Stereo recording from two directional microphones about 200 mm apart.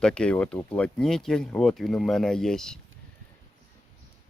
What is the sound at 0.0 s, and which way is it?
Speech, 5° left (ahead or behind).